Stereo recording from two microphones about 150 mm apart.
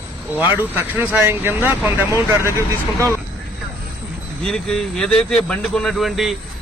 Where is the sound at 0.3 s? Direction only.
15° right (ahead or behind).